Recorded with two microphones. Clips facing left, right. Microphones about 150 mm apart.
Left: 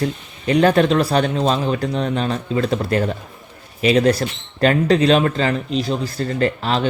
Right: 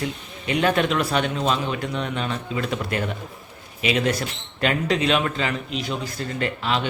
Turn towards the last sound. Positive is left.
turn(degrees=40)  # may be behind; listen again after turning